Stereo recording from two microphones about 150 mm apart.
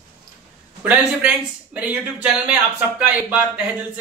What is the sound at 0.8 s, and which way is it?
Speech, 10° right (ahead or behind).